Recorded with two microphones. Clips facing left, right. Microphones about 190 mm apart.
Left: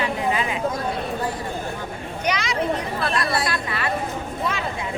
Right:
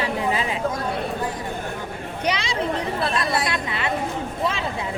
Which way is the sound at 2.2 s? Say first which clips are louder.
Even; 30° right (ahead or behind).